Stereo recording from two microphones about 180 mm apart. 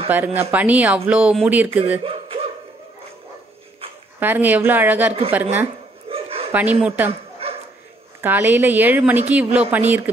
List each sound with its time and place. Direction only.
0.1 s speech: 10° right (ahead or behind)
2.0 s a sound: 30° right (ahead or behind)
4.2 s speech: 10° right (ahead or behind)
6.0 s bow-wow: 30° right (ahead or behind)
6.5 s speech: 10° right (ahead or behind)
7.1 s bow-wow: 35° right (ahead or behind)
8.2 s speech: 10° right (ahead or behind)